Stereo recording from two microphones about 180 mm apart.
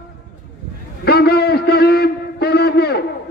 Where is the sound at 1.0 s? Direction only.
60° left (ahead or behind).